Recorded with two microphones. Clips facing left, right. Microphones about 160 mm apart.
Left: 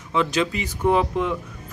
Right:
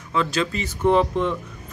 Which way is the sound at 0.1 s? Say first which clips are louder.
Left 1 dB; 20° left (ahead or behind).